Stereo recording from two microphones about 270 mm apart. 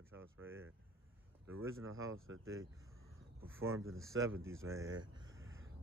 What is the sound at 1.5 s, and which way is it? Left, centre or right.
Speech, right.